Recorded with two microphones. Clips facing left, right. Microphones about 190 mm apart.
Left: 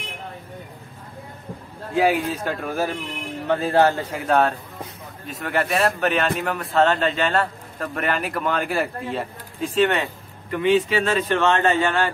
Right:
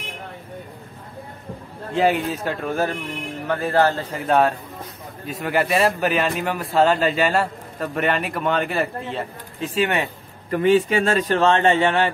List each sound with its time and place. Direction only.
2.0 s speech: 5° left (ahead or behind)
3.4 s speech: 20° left (ahead or behind)
4.1 s speech: centre (ahead or behind)
10.5 s speech: 45° right (ahead or behind); by 12.1 s 25° right (ahead or behind)